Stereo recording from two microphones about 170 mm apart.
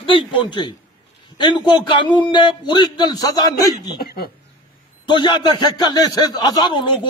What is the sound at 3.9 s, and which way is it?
Speech, 60° left (ahead or behind).